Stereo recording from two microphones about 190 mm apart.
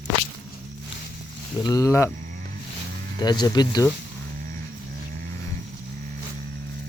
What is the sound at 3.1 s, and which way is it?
Speech, 20° left (ahead or behind).